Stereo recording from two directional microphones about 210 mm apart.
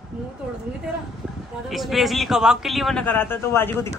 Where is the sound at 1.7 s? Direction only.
Centre (ahead or behind).